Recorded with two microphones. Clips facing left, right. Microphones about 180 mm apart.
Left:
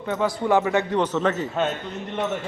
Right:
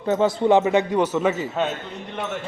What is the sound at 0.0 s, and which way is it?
A man's voice, 30° right (ahead or behind).